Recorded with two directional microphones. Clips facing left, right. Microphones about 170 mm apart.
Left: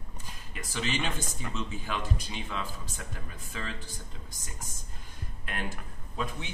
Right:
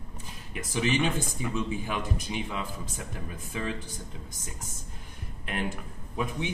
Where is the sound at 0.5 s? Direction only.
15° right (ahead or behind).